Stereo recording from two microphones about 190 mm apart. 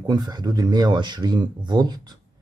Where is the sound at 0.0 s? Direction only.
20° right (ahead or behind).